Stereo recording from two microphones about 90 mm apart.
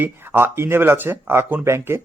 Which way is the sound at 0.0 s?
25° right (ahead or behind).